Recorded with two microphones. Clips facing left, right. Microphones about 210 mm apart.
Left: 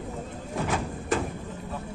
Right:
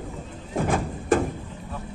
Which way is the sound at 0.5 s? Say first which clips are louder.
Right 5 dB; 50° right (ahead or behind).